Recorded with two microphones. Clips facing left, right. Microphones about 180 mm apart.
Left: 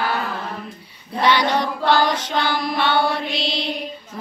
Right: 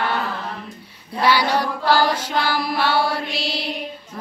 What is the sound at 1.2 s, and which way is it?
Child singing, 5° right (ahead or behind).